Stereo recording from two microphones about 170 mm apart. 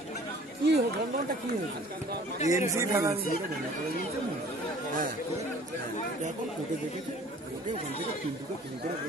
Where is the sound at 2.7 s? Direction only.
15° right (ahead or behind).